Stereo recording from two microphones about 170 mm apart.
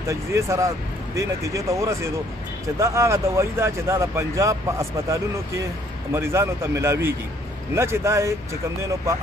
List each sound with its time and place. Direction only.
0.1 s speech: 15° right (ahead or behind)